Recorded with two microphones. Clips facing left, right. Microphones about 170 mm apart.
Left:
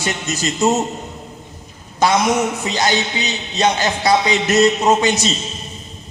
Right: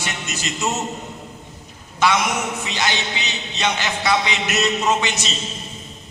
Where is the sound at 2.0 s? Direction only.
40° left (ahead or behind).